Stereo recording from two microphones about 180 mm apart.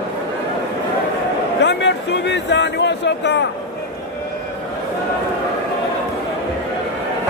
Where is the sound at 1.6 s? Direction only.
75° left (ahead or behind).